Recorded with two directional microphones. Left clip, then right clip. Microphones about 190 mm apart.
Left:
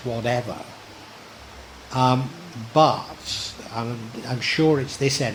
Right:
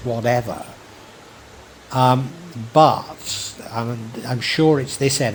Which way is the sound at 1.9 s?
30° right (ahead or behind).